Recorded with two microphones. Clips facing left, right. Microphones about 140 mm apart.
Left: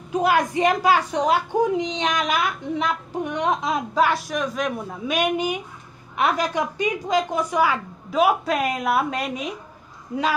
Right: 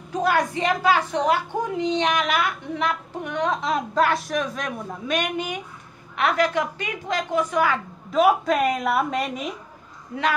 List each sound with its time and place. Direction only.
0.1 s a woman's voice: 15° left (ahead or behind)
10.1 s speech: 20° left (ahead or behind)